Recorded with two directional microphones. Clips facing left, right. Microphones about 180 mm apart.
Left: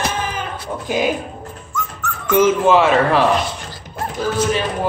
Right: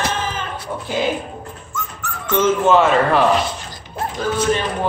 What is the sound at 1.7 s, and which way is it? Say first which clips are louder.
Dog: left 3 dB; 35° right (ahead or behind).